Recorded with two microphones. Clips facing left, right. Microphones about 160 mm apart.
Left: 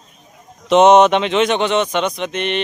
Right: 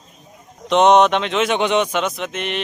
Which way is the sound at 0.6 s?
Centre (ahead or behind).